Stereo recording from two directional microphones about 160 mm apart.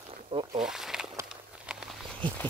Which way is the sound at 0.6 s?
5° right (ahead or behind).